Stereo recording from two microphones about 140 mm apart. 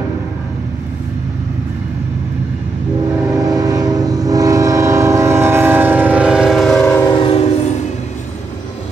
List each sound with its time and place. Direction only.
3.3 s train: 25° right (ahead or behind); by 7.0 s 5° left (ahead or behind)
7.2 s train: 40° left (ahead or behind)